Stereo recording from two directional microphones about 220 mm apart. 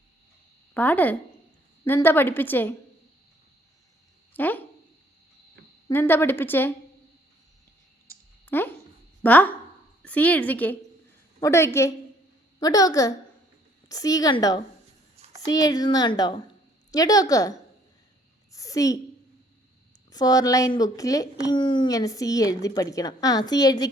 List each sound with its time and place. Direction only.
0.7 s speech: 10° left (ahead or behind)
4.4 s speech: 10° left (ahead or behind)
5.9 s speech: 10° left (ahead or behind)
8.4 s speech: 10° left (ahead or behind)
18.5 s a sound: 15° left (ahead or behind)
20.1 s speech: 15° left (ahead or behind)